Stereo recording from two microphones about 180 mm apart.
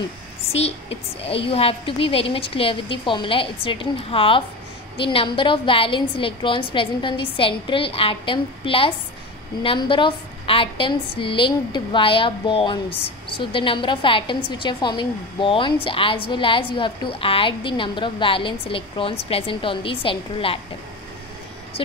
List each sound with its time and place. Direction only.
0.5 s a woman's voice: 35° left (ahead or behind)